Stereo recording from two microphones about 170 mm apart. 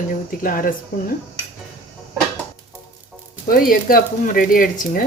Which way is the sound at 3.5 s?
60° left (ahead or behind).